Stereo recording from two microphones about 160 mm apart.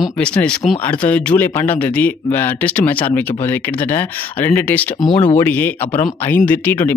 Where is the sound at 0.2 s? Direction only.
5° left (ahead or behind).